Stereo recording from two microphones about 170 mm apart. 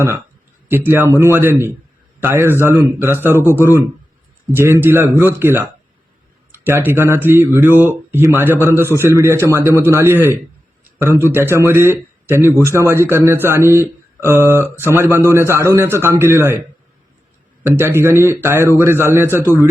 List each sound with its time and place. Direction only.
0.7 s speech: 15° right (ahead or behind)
17.6 s speech: 15° right (ahead or behind)